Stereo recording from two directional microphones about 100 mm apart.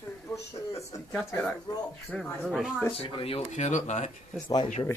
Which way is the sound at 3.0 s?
65° left (ahead or behind).